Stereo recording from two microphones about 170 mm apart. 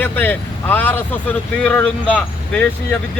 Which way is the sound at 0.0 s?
10° left (ahead or behind).